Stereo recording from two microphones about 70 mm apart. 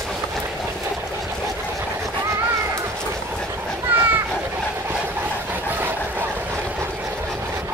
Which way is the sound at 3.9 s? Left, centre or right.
Right.